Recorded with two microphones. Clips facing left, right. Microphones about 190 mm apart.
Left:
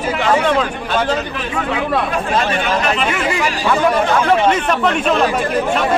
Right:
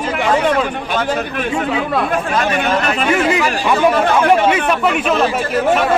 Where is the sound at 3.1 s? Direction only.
20° right (ahead or behind).